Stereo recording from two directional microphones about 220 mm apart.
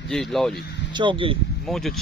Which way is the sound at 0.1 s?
Centre (ahead or behind).